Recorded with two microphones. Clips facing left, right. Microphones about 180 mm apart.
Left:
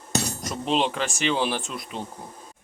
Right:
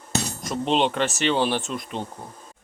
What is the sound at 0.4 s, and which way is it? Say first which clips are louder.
Speech: right 4 dB; centre (ahead or behind).